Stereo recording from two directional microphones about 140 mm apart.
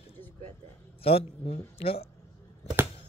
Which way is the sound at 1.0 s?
45° left (ahead or behind).